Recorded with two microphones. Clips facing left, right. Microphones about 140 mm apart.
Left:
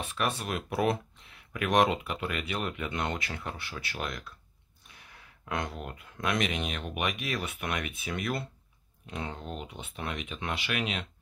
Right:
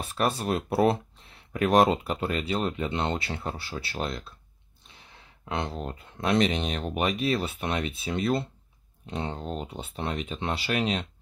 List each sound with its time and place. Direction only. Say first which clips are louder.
0.0 s speech: right 5 dB; 35° right (ahead or behind)